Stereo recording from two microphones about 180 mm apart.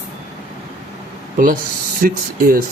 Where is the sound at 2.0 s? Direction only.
50° right (ahead or behind).